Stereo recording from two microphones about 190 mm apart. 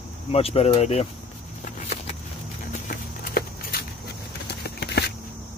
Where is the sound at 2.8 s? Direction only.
50° left (ahead or behind).